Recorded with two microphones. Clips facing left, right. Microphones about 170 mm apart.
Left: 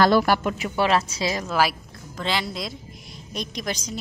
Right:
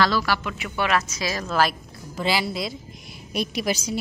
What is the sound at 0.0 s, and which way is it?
Speech, 50° left (ahead or behind).